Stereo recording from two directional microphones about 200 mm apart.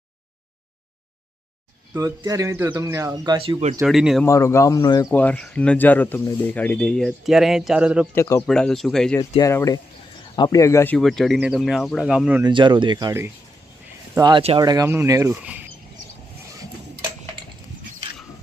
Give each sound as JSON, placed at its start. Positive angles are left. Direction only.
{"t": 1.9, "sound": "speech", "side_deg": -15}
{"t": 3.8, "sound": "speech", "side_deg": 0}
{"t": 4.3, "sound": "speech", "side_deg": 15}
{"t": 5.1, "sound": "speech", "side_deg": 5}
{"t": 8.1, "sound": "speech", "side_deg": 15}
{"t": 8.4, "sound": "speech", "side_deg": 5}
{"t": 9.4, "sound": "speech", "side_deg": 15}
{"t": 10.9, "sound": "speech", "side_deg": 0}
{"t": 12.5, "sound": "speech", "side_deg": -25}